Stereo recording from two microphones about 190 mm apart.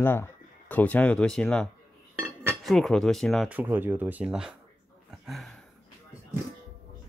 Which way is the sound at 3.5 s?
10° right (ahead or behind).